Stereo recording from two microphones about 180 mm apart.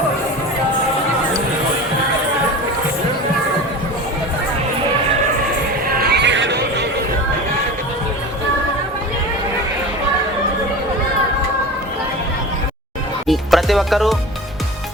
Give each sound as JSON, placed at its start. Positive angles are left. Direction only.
{"t": 5.9, "sound": "music", "side_deg": -60}
{"t": 13.2, "sound": "music", "side_deg": 0}